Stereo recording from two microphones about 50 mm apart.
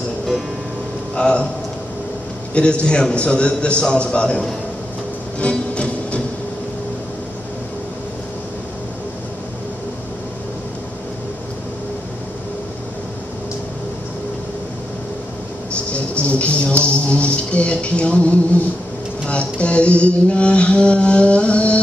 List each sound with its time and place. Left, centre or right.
1.1 s a man's voice: centre
2.5 s a man's voice: left
5.4 s music: left
15.7 s music: left